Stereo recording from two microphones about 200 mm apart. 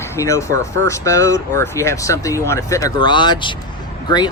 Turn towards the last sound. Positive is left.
turn(degrees=20)  # may be behind; listen again after turning